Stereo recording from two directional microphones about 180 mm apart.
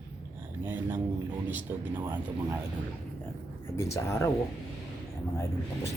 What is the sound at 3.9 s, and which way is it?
Speech, 15° left (ahead or behind).